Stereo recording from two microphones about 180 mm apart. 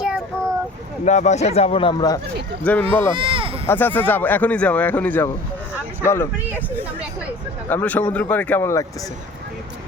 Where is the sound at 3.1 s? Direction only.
30° right (ahead or behind).